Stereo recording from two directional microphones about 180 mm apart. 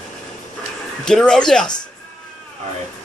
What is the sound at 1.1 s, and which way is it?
Speech, 5° left (ahead or behind).